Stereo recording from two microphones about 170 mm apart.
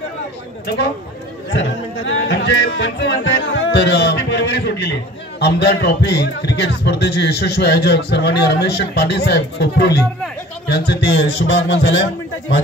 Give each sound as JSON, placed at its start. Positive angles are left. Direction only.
{"t": 0.7, "sound": "speech", "side_deg": 75}
{"t": 1.5, "sound": "speech", "side_deg": 90}